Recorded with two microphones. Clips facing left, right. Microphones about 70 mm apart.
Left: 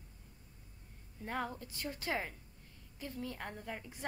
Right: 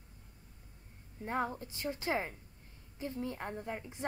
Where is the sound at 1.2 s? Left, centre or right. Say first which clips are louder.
Right 4 dB; right.